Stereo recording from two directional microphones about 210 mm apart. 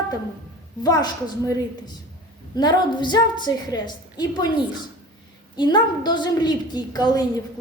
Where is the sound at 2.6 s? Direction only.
20° left (ahead or behind).